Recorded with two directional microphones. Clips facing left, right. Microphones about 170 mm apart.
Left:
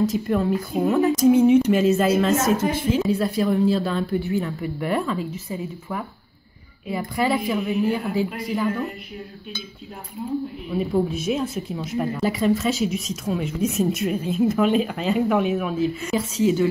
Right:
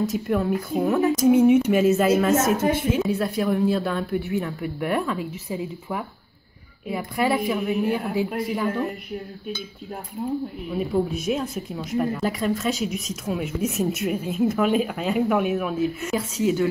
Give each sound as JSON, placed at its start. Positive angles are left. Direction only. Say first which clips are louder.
{"t": 0.0, "sound": "speech", "louder": "left 2 dB", "side_deg": -5}
{"t": 10.7, "sound": "speech", "louder": "left 2 dB", "side_deg": 0}